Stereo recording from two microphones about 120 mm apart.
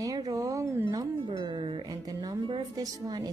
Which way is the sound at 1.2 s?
45° right (ahead or behind).